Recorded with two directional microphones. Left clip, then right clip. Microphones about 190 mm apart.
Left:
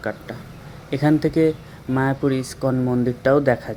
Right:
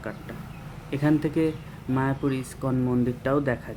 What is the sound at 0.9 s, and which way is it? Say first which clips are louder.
Speech: left 5 dB; 15° left (ahead or behind).